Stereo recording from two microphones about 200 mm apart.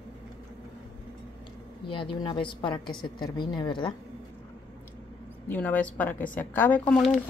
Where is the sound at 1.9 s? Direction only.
25° left (ahead or behind).